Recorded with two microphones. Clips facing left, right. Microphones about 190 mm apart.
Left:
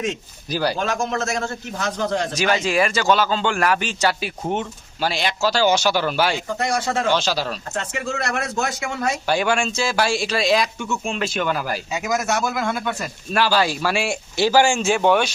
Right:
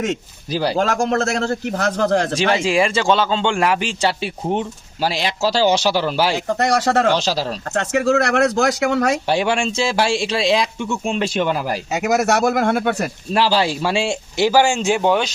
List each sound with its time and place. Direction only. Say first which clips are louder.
0.5 s speech: right 2 dB; 25° right (ahead or behind)
0.8 s a man's voice: right 5 dB; 70° right (ahead or behind)
2.3 s speech: right 3 dB; 30° right (ahead or behind)
6.3 s a man's voice: right 5 dB; 70° right (ahead or behind)
7.1 s speech: right 2 dB; 35° right (ahead or behind)
7.7 s a man's voice: right 9 dB; 70° right (ahead or behind)
9.2 s speech: right 2 dB; 25° right (ahead or behind)
11.9 s speech: right 7 dB; 70° right (ahead or behind)
13.3 s speech: right 2 dB; 30° right (ahead or behind)